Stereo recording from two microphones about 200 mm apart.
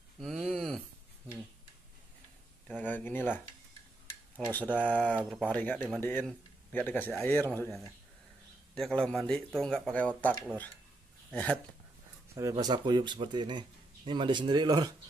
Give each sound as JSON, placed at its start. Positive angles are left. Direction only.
{"t": 0.2, "sound": "a sound", "side_deg": 0}
{"t": 2.7, "sound": "a sound", "side_deg": 10}
{"t": 4.5, "sound": "a man's voice", "side_deg": 10}
{"t": 5.0, "sound": "speech", "side_deg": -5}
{"t": 5.5, "sound": "a man's voice", "side_deg": 10}
{"t": 8.7, "sound": "speech", "side_deg": 0}
{"t": 11.3, "sound": "speech", "side_deg": 5}
{"t": 12.4, "sound": "speech", "side_deg": -15}